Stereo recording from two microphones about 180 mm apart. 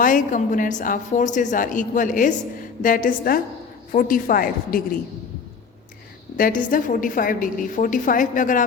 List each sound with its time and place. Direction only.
0.0 s a woman's voice: 45° left (ahead or behind)
6.3 s a woman's voice: 50° left (ahead or behind)